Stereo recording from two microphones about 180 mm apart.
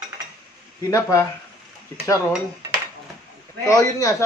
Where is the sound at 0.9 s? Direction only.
20° left (ahead or behind).